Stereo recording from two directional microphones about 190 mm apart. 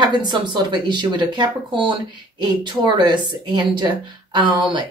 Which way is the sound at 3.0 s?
25° right (ahead or behind).